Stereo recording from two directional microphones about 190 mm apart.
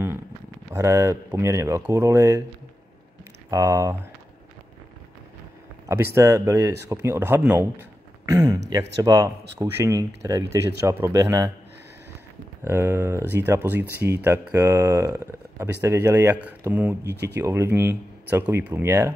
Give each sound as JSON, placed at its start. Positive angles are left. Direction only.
{"t": 0.7, "sound": "speech", "side_deg": -15}
{"t": 3.4, "sound": "speech", "side_deg": -15}
{"t": 6.1, "sound": "speech", "side_deg": -15}
{"t": 12.6, "sound": "speech", "side_deg": -15}
{"t": 17.1, "sound": "speech", "side_deg": -60}
{"t": 17.4, "sound": "speech", "side_deg": -10}